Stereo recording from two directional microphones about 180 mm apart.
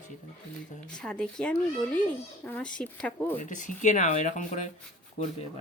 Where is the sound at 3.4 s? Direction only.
45° left (ahead or behind).